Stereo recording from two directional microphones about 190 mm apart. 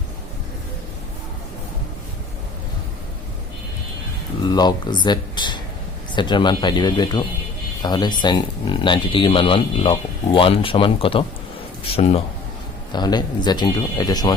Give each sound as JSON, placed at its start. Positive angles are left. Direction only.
{"t": 4.4, "sound": "speech", "side_deg": 20}
{"t": 12.9, "sound": "speech", "side_deg": 20}